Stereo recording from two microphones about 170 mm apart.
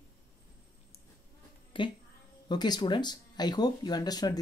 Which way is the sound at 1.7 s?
30° left (ahead or behind).